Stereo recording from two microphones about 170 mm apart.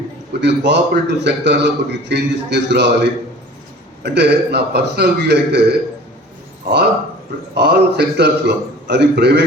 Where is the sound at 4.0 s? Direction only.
85° right.